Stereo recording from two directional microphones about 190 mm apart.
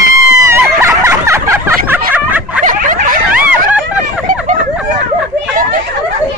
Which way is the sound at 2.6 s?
45° right (ahead or behind).